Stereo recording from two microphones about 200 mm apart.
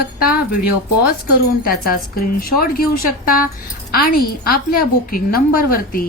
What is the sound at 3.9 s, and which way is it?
A woman's voice, 50° left (ahead or behind).